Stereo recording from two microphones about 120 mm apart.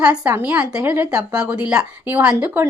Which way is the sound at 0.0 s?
10° right (ahead or behind).